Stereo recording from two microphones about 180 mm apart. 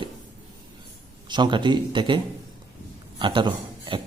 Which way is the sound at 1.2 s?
25° right (ahead or behind).